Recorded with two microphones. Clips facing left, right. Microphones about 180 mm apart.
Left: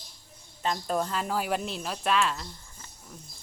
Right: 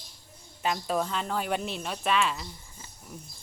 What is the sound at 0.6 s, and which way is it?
Speech, 5° right (ahead or behind).